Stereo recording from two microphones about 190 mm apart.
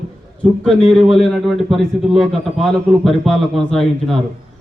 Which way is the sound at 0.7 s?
Centre (ahead or behind).